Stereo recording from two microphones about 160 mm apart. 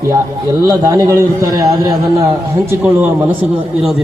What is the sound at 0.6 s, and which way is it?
A man's voice, 15° right (ahead or behind).